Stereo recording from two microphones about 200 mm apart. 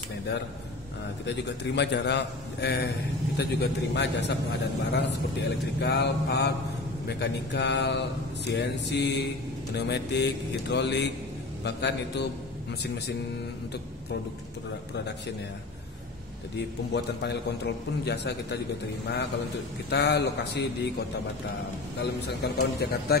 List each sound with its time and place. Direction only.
1.2 s a man's voice: 60° left (ahead or behind)
16.5 s a man's voice: 60° left (ahead or behind)
19.9 s a man's voice: 55° left (ahead or behind)
21.9 s a man's voice: 55° left (ahead or behind)